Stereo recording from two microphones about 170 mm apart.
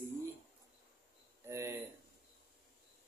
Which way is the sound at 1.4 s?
15° right (ahead or behind).